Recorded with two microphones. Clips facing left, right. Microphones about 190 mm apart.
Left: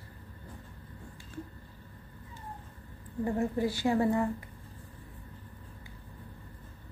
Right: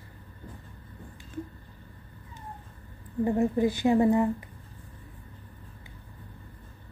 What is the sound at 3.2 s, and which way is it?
A woman's voice, 20° right (ahead or behind).